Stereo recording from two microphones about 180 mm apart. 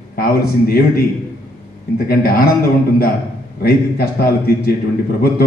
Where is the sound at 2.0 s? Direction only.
55° left (ahead or behind).